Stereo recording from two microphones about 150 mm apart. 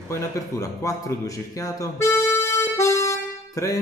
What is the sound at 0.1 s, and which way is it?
A man's voice, 20° left (ahead or behind).